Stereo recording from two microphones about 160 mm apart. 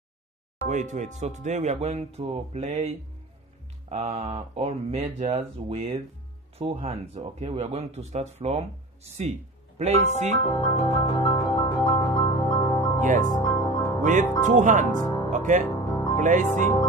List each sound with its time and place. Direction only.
0.7 s speech: 50° right (ahead or behind)
9.8 s speech: 45° right (ahead or behind)
10.4 s music: 40° left (ahead or behind)
13.0 s speech: 55° right (ahead or behind)
13.4 s music: 20° left (ahead or behind)
14.4 s speech: 55° right (ahead or behind)
15.0 s music: 25° left (ahead or behind)
15.2 s music: 50° right (ahead or behind)
15.7 s music: 20° left (ahead or behind)
16.2 s speech: 50° right (ahead or behind)